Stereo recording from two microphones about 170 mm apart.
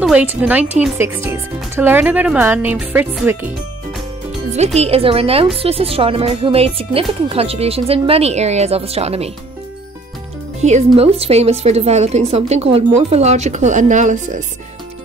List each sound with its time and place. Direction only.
0.0 s speech: 10° right (ahead or behind)
4.7 s a woman's voice: 35° right (ahead or behind)
10.6 s a woman's voice: 40° right (ahead or behind)